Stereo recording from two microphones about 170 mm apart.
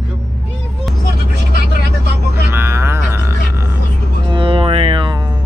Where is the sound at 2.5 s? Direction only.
15° right (ahead or behind).